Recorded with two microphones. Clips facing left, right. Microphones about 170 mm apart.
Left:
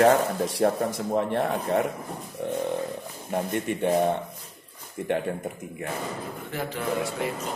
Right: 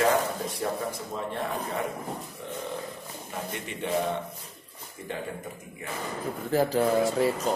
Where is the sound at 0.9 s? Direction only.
65° left (ahead or behind).